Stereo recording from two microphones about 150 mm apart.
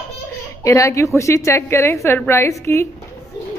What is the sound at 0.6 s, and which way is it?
A woman's voice, 20° left (ahead or behind).